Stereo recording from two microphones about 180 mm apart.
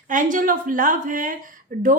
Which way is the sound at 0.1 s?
45° right (ahead or behind).